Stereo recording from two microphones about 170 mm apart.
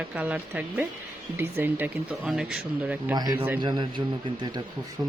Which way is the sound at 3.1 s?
25° right (ahead or behind).